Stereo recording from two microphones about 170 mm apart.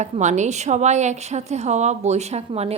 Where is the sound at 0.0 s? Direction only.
45° right (ahead or behind).